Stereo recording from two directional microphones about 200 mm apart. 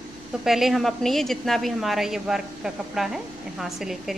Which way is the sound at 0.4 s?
Centre (ahead or behind).